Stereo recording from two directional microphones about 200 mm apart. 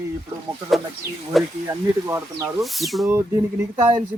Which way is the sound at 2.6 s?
Centre (ahead or behind).